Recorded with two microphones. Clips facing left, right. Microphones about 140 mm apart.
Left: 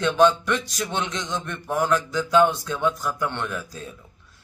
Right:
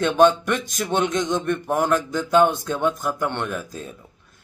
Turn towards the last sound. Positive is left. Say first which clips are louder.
# right 2 dB
turn(degrees=-50)  # may be behind; listen again after turning